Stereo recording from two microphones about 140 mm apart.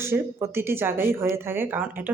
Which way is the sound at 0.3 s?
15° right (ahead or behind).